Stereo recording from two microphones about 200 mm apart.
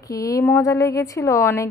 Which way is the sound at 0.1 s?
15° left (ahead or behind).